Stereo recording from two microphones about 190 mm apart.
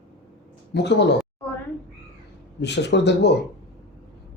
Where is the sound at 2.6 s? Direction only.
65° left (ahead or behind).